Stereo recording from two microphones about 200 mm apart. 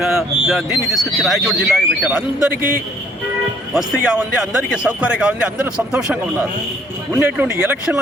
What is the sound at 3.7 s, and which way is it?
Speech, 5° right (ahead or behind).